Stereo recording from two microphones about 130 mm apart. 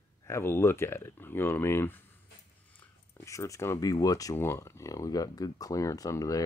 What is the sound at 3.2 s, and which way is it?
Speech, 25° left (ahead or behind).